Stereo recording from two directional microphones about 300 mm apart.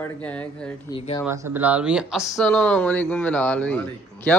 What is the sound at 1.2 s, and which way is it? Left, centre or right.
Speech, centre.